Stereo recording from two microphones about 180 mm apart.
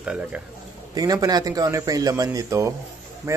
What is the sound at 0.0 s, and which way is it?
Speech, 5° right (ahead or behind).